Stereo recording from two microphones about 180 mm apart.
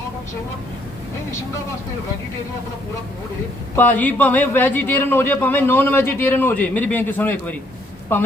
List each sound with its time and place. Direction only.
3.8 s speech: 10° left (ahead or behind)